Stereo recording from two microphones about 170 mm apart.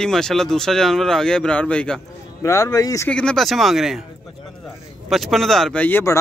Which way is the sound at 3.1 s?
5° left (ahead or behind).